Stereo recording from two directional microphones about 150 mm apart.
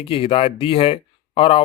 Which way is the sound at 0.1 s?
40° left (ahead or behind).